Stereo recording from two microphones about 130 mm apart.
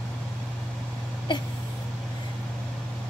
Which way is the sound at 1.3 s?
40° left (ahead or behind).